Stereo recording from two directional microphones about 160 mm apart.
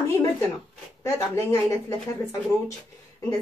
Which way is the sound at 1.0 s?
20° left (ahead or behind).